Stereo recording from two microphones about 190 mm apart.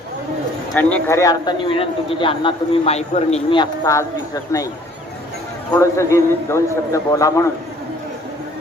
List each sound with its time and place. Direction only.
0.7 s a man's voice: 5° left (ahead or behind)
5.7 s a man's voice: 15° left (ahead or behind)